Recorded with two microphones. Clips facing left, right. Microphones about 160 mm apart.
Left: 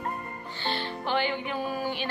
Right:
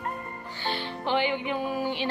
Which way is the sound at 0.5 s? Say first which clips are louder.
Even; 10° right (ahead or behind).